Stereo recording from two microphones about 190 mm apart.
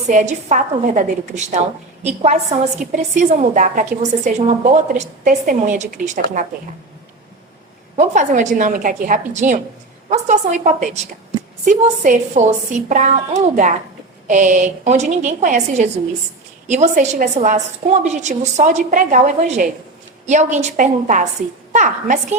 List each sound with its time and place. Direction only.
0.1 s a woman's voice: 40° right (ahead or behind)
7.9 s a woman's voice: 40° right (ahead or behind)